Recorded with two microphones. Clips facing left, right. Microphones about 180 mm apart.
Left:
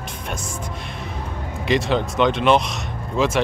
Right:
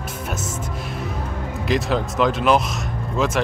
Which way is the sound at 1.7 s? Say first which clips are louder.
Left 2 dB; centre (ahead or behind).